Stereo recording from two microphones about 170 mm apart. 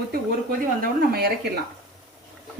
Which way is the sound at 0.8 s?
60° right (ahead or behind).